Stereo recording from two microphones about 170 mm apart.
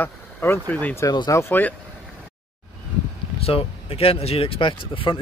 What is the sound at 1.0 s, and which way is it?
Speech, 20° left (ahead or behind).